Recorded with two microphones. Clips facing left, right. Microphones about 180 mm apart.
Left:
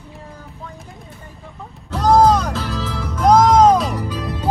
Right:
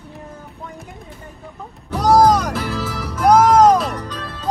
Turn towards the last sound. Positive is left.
turn(degrees=10)  # may be behind; listen again after turning